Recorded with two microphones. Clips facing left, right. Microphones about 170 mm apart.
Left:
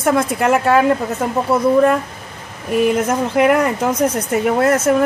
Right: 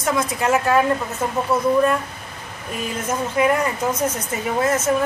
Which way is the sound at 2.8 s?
70° left (ahead or behind).